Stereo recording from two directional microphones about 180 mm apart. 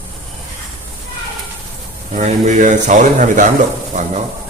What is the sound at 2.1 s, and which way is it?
Speech, 40° right (ahead or behind).